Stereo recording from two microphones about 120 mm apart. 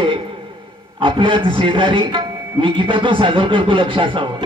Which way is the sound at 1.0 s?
45° right (ahead or behind).